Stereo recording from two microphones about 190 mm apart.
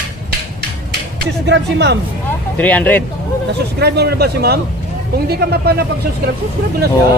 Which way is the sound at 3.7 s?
60° right (ahead or behind).